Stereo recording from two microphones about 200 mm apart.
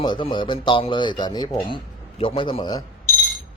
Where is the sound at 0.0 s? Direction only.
25° left (ahead or behind).